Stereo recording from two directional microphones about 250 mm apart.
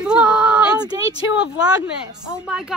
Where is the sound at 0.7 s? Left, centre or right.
Centre.